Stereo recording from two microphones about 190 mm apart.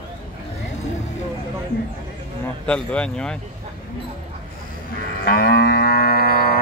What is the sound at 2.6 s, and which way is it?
Speech, 5° left (ahead or behind).